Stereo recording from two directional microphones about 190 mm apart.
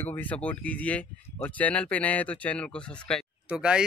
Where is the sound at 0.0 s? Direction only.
10° left (ahead or behind).